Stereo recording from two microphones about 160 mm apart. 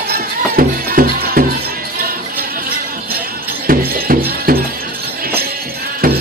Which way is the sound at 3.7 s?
65° right (ahead or behind).